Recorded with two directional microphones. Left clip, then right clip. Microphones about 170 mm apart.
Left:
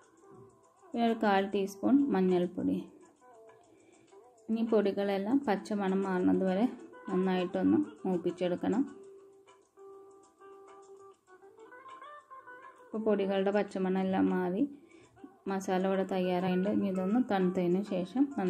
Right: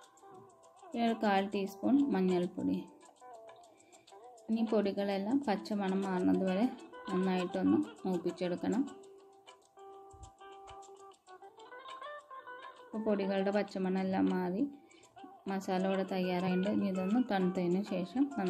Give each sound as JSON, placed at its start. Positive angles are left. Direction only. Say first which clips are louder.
{"t": 0.9, "sound": "a woman's voice", "louder": "left 3 dB", "side_deg": 0}
{"t": 4.7, "sound": "a woman's voice", "louder": "left 4 dB", "side_deg": 0}
{"t": 10.4, "sound": "music", "louder": "right 2 dB", "side_deg": -30}
{"t": 12.9, "sound": "a woman's voice", "louder": "left 4 dB", "side_deg": 0}